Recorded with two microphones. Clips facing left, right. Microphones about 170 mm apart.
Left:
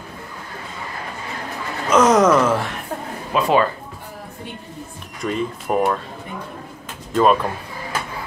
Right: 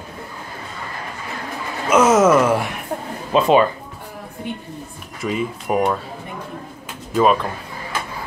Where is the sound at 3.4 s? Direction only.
20° right (ahead or behind).